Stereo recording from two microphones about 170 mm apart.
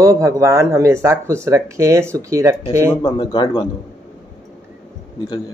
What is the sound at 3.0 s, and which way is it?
Speech, 25° left (ahead or behind).